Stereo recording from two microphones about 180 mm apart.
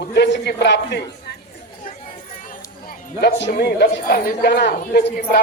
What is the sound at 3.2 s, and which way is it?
A man's voice, 70° left (ahead or behind).